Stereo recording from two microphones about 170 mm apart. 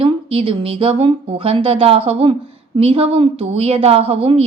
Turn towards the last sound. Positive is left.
turn(degrees=-35)  # may be behind; listen again after turning